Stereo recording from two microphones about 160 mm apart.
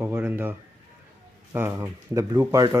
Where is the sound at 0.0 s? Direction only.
10° right (ahead or behind).